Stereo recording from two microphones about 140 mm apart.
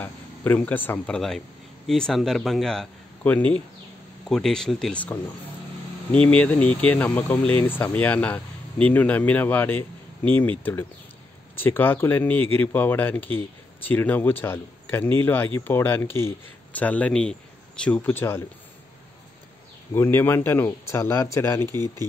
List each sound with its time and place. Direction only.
0.0 s a man's voice: 10° left (ahead or behind)
6.2 s speech: 10° left (ahead or behind)
19.9 s speech: 15° left (ahead or behind)